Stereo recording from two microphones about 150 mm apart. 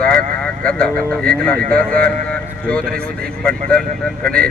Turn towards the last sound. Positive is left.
turn(degrees=5)  # may be behind; listen again after turning